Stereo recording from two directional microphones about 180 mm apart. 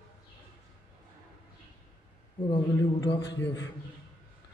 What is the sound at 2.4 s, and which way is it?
A man's voice, 25° left (ahead or behind).